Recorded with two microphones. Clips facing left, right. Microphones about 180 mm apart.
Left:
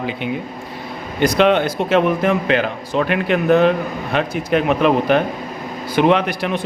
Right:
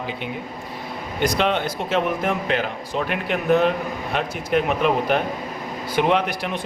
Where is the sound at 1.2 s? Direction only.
70° left (ahead or behind).